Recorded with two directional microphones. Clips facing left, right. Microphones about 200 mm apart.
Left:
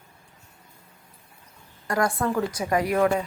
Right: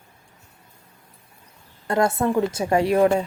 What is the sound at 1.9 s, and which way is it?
A woman's voice, 25° right (ahead or behind).